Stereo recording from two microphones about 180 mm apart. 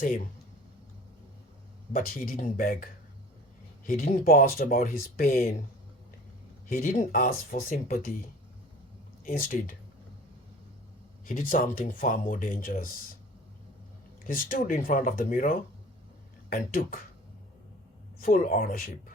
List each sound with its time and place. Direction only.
1.9 s speech: 50° left (ahead or behind)
6.7 s speech: 45° left (ahead or behind)
9.2 s speech: 50° left (ahead or behind)
11.3 s speech: 45° left (ahead or behind)
14.3 s speech: 50° left (ahead or behind)
18.2 s speech: 50° left (ahead or behind)